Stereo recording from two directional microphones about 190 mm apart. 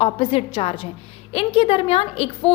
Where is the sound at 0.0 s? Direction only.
30° left (ahead or behind).